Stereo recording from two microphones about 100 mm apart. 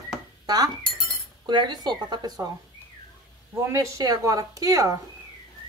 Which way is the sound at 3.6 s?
30° right (ahead or behind).